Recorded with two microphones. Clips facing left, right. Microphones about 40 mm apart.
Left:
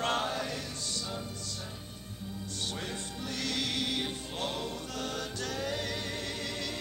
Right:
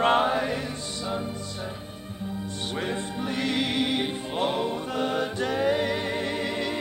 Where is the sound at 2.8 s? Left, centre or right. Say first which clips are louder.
Right 9 dB; right.